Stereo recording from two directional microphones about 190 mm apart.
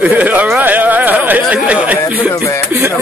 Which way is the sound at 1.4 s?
5° right (ahead or behind).